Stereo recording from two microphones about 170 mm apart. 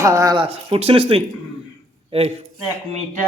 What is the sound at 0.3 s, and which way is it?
A man's voice, 30° right (ahead or behind).